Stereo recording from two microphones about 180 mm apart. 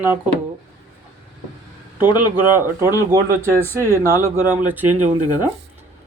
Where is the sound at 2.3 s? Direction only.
10° right (ahead or behind).